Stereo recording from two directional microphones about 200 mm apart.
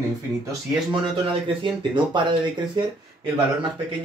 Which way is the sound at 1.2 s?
25° right (ahead or behind).